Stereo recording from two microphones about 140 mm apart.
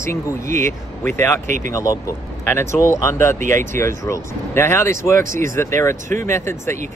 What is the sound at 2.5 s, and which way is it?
Speech, 20° left (ahead or behind).